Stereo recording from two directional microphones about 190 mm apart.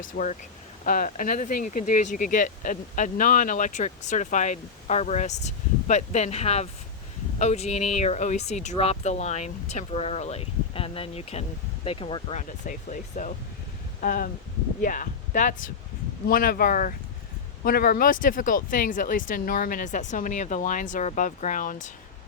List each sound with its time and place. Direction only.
0.0 s speech: 45° left (ahead or behind)